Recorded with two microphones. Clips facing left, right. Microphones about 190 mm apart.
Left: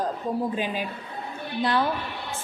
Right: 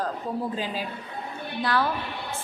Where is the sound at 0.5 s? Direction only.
20° left (ahead or behind).